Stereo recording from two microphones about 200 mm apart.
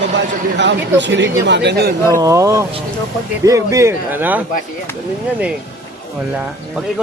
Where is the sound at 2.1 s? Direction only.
15° right (ahead or behind).